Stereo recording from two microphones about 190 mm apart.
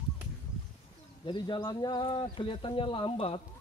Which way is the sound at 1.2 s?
25° left (ahead or behind).